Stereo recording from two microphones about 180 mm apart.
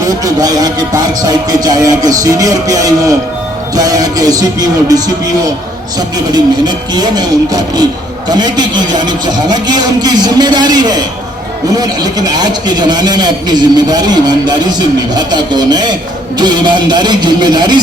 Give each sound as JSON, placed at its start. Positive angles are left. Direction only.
{"t": 0.0, "sound": "music", "side_deg": -20}